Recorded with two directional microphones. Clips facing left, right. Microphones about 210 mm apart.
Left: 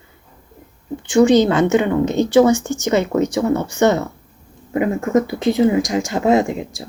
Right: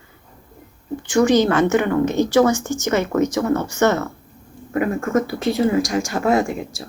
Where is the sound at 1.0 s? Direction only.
15° left (ahead or behind).